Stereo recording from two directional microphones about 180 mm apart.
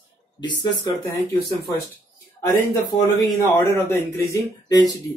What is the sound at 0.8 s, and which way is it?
Speech, 20° left (ahead or behind).